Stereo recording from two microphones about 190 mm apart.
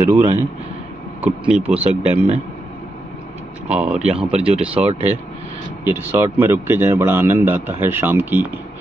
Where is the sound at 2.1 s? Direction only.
35° right (ahead or behind).